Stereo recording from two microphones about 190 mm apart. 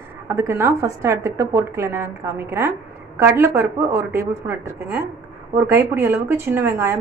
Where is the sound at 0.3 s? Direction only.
15° right (ahead or behind).